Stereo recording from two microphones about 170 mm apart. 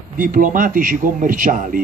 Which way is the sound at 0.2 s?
50° right (ahead or behind).